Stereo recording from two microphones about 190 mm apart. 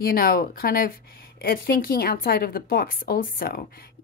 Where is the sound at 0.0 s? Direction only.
50° left (ahead or behind).